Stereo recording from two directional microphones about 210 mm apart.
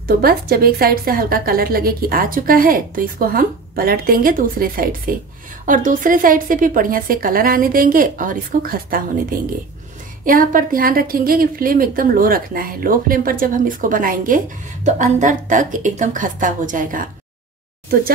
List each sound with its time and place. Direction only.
0.0 s a woman's voice: 45° right (ahead or behind)